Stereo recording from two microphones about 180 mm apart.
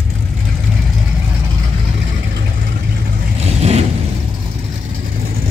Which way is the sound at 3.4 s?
35° right (ahead or behind).